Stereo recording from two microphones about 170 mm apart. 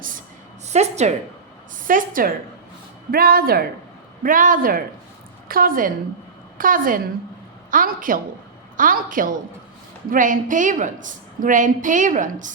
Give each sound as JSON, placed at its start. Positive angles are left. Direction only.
{"t": 0.7, "sound": "a woman's voice", "side_deg": -40}
{"t": 1.9, "sound": "a woman's voice", "side_deg": -55}